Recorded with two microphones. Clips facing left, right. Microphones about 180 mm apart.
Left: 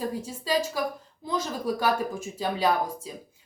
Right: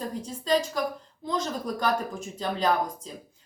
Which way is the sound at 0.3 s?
5° left (ahead or behind).